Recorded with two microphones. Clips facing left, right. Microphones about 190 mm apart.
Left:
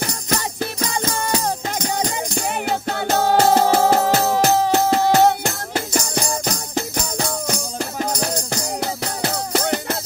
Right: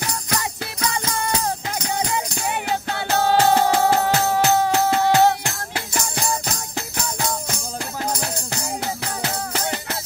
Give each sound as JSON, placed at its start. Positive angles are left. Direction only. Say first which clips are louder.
{"t": 0.0, "sound": "music", "louder": "left 2 dB", "side_deg": 45}
{"t": 9.5, "sound": "music", "louder": "left 6 dB", "side_deg": 45}